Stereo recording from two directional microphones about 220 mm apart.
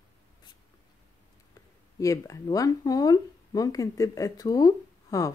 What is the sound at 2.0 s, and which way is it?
Speech, 15° left (ahead or behind).